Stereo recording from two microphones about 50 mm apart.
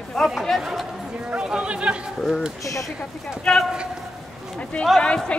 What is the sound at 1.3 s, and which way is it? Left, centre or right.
Chatter, centre.